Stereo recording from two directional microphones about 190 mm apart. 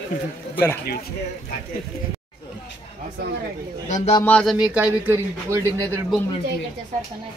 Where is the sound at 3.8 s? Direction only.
40° left (ahead or behind).